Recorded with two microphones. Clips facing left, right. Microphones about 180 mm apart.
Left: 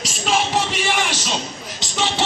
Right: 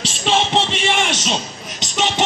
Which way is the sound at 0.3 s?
25° right (ahead or behind).